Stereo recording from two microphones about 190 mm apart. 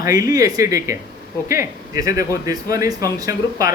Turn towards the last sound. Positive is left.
turn(degrees=-15)  # may be behind; listen again after turning